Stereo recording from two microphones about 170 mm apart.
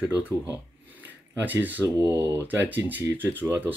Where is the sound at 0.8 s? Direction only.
10° right (ahead or behind).